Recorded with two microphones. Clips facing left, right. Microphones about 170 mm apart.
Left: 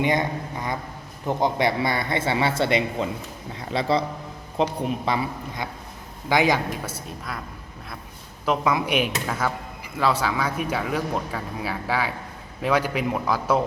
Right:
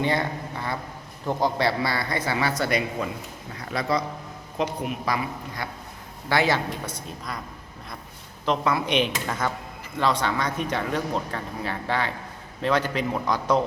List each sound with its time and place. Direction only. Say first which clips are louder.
0.0 s speech: left 2 dB; 15° left (ahead or behind)
6.2 s speech: left 2 dB; 15° left (ahead or behind)
8.4 s speech: left 1 dB; 10° left (ahead or behind)